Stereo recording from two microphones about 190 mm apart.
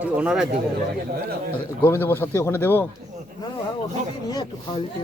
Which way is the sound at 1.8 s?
10° left (ahead or behind).